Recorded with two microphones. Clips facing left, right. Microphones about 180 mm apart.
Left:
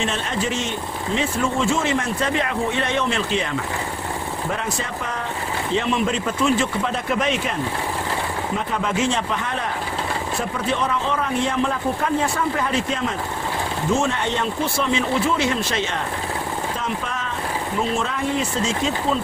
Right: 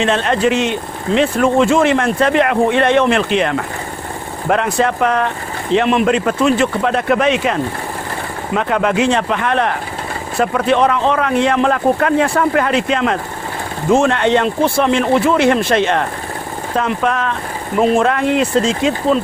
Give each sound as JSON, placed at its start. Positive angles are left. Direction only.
{"t": 0.0, "sound": "speech", "side_deg": -75}
{"t": 8.5, "sound": "speech", "side_deg": -70}